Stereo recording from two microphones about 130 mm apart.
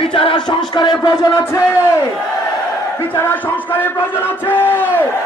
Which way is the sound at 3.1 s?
15° left (ahead or behind).